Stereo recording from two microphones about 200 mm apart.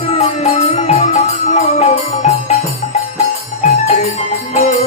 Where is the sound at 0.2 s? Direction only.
35° left (ahead or behind).